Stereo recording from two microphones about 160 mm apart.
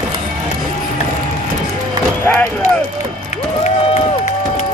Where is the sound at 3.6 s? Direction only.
45° left (ahead or behind).